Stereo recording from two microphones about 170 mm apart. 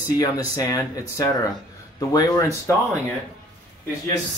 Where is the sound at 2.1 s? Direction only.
20° left (ahead or behind).